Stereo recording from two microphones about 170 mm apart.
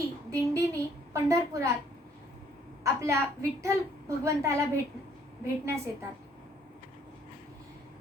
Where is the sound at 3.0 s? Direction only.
15° right (ahead or behind).